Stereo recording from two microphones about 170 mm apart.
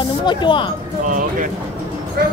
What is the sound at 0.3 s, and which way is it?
Speech, 30° left (ahead or behind).